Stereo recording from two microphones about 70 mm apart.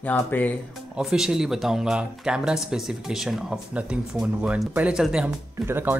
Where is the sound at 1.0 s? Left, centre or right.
Centre.